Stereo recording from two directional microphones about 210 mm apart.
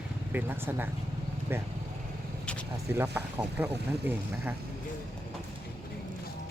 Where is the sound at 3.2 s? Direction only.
10° right (ahead or behind).